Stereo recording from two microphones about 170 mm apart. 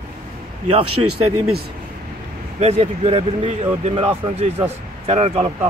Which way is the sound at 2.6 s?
40° right (ahead or behind).